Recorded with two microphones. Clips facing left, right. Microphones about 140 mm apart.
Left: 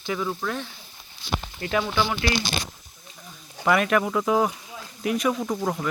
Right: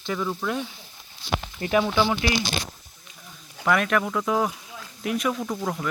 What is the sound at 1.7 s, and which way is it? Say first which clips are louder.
Speech: right 3 dB; 15° right (ahead or behind).